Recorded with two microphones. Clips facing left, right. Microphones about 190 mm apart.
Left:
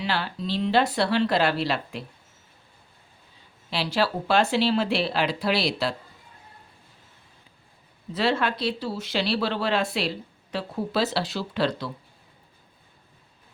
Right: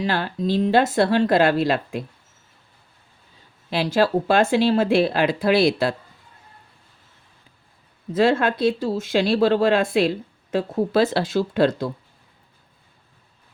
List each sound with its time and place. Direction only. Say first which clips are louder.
0.0 s speech: right 5 dB; 50° right (ahead or behind)
3.7 s speech: right 6 dB; 50° right (ahead or behind)
8.1 s speech: right 6 dB; 50° right (ahead or behind)